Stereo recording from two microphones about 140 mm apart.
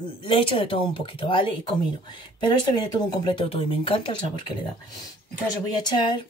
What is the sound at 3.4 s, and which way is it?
Speech, 40° left (ahead or behind).